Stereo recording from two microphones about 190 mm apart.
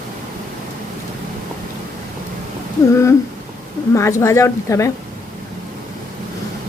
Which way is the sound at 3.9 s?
15° left (ahead or behind).